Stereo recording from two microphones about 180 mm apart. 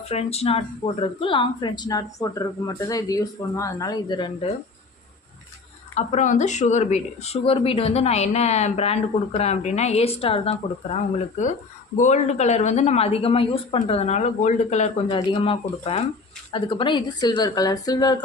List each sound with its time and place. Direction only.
0.0 s speech: 35° left (ahead or behind)
5.9 s speech: 40° left (ahead or behind); by 18.2 s 20° left (ahead or behind)